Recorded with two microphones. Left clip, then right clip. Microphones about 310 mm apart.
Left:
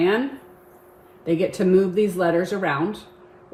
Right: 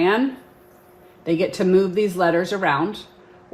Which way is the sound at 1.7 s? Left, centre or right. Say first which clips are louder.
Even; centre.